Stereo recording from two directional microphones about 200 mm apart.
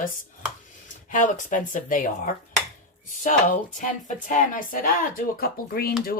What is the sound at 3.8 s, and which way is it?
Speech, 40° left (ahead or behind).